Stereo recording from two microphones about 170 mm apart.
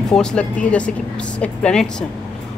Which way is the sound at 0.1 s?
5° left (ahead or behind).